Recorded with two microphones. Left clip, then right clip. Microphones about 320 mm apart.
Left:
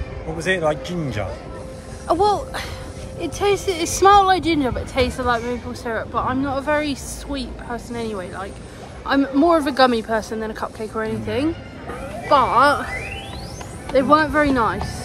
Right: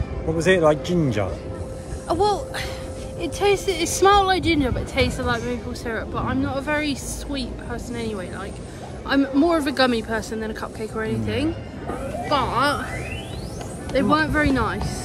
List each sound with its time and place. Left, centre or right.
0.4 s speech: centre
2.0 s speech: centre
13.9 s speech: centre